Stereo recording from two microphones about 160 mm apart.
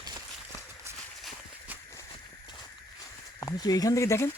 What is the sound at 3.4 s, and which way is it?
Speech, 25° left (ahead or behind).